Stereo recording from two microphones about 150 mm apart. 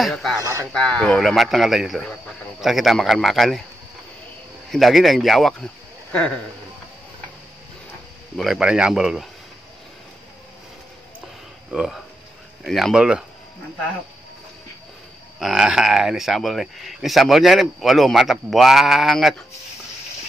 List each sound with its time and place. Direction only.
0.0 s speech: centre (ahead or behind)
0.4 s speech: 20° right (ahead or behind)
0.8 s speech: 5° left (ahead or behind)
4.6 s speech: centre (ahead or behind)
8.4 s speech: 5° right (ahead or behind)
11.7 s speech: 5° right (ahead or behind)
15.3 s speech: 5° right (ahead or behind)